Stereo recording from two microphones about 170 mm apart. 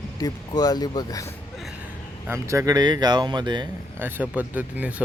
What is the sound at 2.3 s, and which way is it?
Speech, 20° right (ahead or behind).